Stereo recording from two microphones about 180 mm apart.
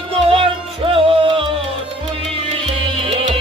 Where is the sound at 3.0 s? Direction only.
35° right (ahead or behind).